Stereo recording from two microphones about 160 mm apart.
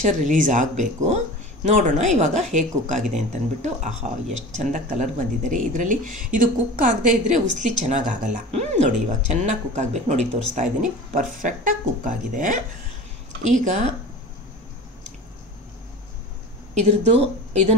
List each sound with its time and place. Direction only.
0.0 s speech: 50° right (ahead or behind)
16.7 s speech: 40° right (ahead or behind)